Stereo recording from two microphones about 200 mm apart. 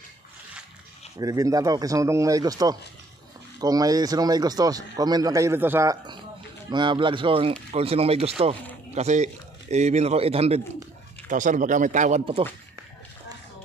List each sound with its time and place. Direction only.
1.1 s a man's voice: 15° right (ahead or behind)